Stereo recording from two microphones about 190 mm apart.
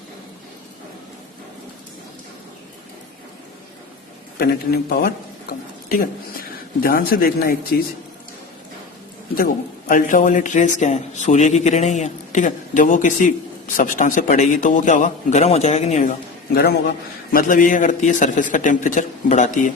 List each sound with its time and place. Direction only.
4.4 s a man's voice: 55° left (ahead or behind)
9.9 s a man's voice: 45° left (ahead or behind)